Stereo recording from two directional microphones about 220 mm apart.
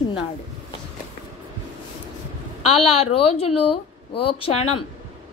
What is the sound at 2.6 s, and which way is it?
A woman's voice, 25° left (ahead or behind).